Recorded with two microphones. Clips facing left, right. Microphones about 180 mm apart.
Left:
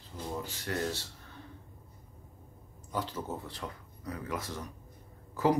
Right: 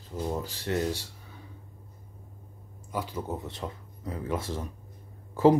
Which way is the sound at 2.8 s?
10° right (ahead or behind).